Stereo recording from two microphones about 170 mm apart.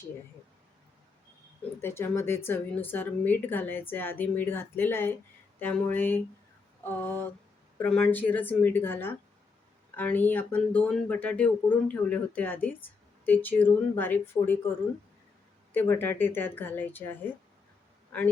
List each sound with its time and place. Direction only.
1.8 s speech: 15° left (ahead or behind)
15.7 s a man's voice: 10° left (ahead or behind)